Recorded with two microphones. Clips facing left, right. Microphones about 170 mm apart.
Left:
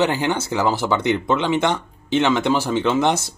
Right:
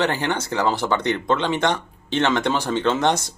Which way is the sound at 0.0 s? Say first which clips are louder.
Left 3 dB; 10° left (ahead or behind).